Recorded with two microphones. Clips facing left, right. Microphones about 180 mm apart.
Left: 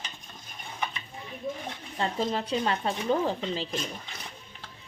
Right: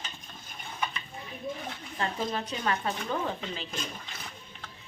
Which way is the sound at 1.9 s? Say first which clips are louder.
Left 3 dB; 25° left (ahead or behind).